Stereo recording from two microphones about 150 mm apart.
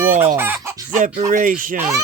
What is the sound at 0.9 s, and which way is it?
Speech, 60° right (ahead or behind).